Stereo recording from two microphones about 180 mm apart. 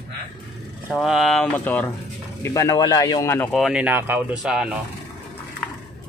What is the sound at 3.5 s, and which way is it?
Speech, centre (ahead or behind).